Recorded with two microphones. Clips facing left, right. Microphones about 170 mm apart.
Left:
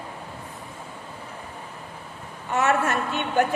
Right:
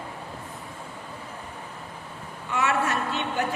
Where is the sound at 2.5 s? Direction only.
45° left (ahead or behind).